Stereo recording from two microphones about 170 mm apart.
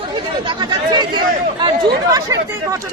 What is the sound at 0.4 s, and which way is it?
Speech, 25° right (ahead or behind).